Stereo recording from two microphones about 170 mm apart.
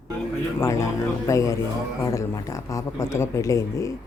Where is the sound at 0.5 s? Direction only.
15° left (ahead or behind).